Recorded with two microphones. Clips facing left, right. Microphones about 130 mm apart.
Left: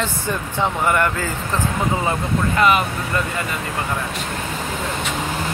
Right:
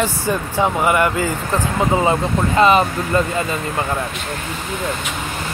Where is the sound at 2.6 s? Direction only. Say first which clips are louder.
Right 5 dB; 30° right (ahead or behind).